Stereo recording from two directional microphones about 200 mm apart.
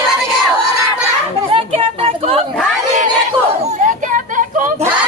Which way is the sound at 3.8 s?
40° right (ahead or behind).